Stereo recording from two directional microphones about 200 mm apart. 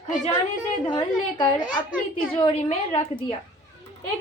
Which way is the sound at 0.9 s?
20° left (ahead or behind).